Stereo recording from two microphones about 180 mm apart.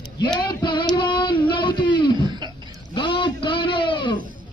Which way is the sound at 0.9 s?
25° left (ahead or behind).